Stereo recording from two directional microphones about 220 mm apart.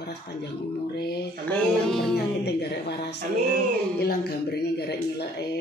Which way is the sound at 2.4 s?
50° left (ahead or behind).